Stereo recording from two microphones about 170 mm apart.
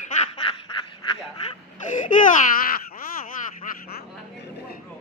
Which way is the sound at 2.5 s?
55° left (ahead or behind).